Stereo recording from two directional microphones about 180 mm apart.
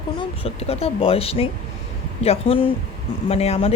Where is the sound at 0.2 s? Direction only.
35° left (ahead or behind).